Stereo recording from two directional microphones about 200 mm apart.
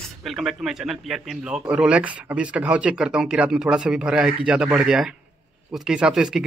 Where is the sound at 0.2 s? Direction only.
Centre (ahead or behind).